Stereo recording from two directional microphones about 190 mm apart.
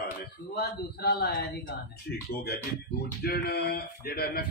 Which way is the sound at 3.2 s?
55° left (ahead or behind).